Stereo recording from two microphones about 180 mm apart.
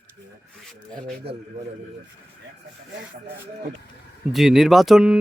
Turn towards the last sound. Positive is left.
turn(degrees=-5)  # may be behind; listen again after turning